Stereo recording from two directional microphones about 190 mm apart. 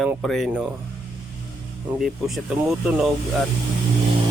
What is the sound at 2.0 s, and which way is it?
Chicken, centre (ahead or behind).